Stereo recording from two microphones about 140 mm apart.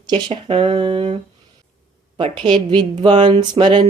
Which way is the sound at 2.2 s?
35° right (ahead or behind).